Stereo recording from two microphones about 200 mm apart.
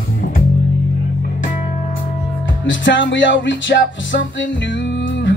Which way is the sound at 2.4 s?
70° left (ahead or behind).